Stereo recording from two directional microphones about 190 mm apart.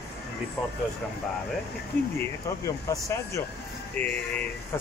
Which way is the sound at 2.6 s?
15° left (ahead or behind).